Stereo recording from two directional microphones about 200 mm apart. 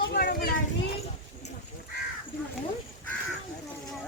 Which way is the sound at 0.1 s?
55° left (ahead or behind).